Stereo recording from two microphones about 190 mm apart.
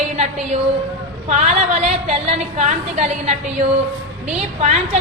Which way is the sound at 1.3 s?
40° right (ahead or behind).